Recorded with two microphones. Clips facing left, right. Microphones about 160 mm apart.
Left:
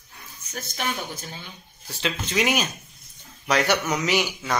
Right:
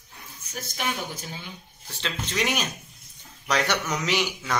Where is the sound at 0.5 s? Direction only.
10° right (ahead or behind).